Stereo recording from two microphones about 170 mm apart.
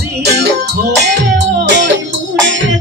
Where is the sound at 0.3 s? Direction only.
75° right (ahead or behind).